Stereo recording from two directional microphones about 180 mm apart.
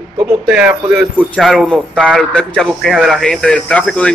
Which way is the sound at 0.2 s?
5° right (ahead or behind).